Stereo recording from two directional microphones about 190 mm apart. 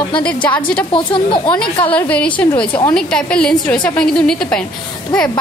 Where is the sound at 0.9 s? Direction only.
25° left (ahead or behind).